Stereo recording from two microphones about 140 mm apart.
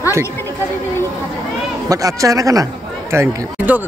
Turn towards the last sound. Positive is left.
turn(degrees=-15)  # may be behind; listen again after turning